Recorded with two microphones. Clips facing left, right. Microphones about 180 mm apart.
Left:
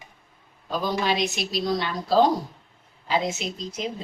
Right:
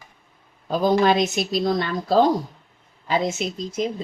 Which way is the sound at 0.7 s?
50° right (ahead or behind).